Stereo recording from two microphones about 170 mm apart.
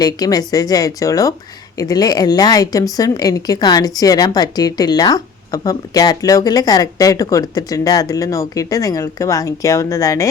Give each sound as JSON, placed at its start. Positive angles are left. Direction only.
{"t": 0.0, "sound": "speech", "side_deg": 20}